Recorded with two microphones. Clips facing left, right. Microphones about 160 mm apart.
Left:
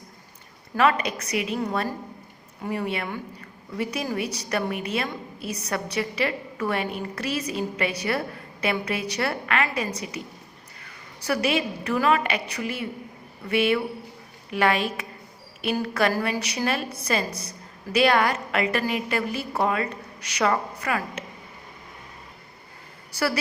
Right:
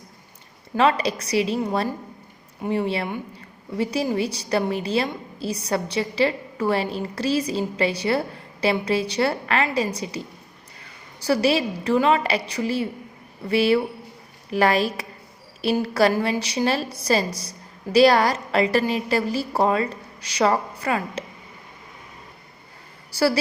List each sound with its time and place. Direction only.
0.8 s a woman's voice: 30° right (ahead or behind)
23.1 s a woman's voice: 30° right (ahead or behind)